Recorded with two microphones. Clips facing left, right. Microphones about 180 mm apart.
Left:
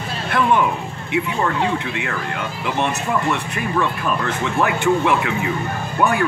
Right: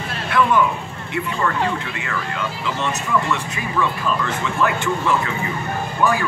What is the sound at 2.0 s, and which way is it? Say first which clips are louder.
Speech: left 1 dB; 60° left (ahead or behind).